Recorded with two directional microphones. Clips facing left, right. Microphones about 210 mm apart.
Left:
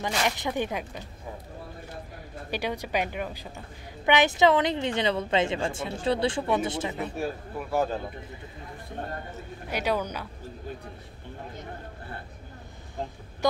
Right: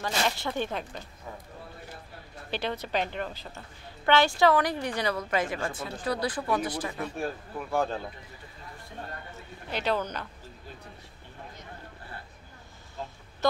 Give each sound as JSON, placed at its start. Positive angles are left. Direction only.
{"t": 0.0, "sound": "speech", "side_deg": 15}
{"t": 2.5, "sound": "a woman's voice", "side_deg": 15}
{"t": 7.2, "sound": "speech", "side_deg": 5}
{"t": 9.7, "sound": "speech", "side_deg": 10}